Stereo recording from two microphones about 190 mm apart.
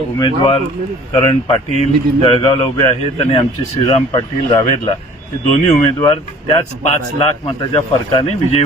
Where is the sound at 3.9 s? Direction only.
25° left (ahead or behind).